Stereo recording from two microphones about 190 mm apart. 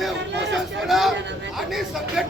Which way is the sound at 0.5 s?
Centre (ahead or behind).